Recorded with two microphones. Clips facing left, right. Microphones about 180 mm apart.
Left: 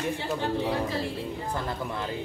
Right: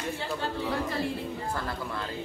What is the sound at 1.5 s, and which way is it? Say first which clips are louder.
Speech: left 2 dB; 20° left (ahead or behind).